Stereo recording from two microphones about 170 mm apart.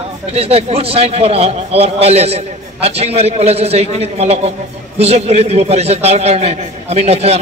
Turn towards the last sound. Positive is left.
turn(degrees=-40)  # may be behind; listen again after turning